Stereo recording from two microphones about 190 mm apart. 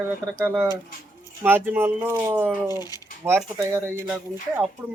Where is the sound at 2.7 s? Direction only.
20° left (ahead or behind).